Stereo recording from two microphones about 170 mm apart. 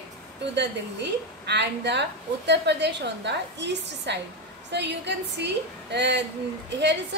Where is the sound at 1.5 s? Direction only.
90° right.